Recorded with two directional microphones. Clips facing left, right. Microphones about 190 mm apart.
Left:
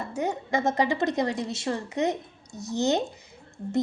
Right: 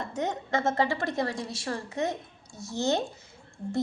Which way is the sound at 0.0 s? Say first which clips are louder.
Left 2 dB; 10° left (ahead or behind).